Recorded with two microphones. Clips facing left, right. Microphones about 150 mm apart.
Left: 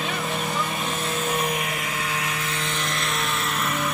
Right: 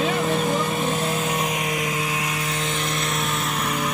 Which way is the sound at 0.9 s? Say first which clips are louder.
Right 2 dB; 15° right (ahead or behind).